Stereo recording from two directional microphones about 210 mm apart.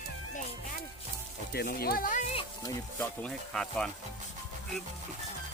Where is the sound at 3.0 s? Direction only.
5° left (ahead or behind).